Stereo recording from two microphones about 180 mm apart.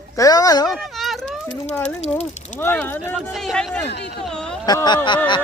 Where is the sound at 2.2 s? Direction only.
10° left (ahead or behind).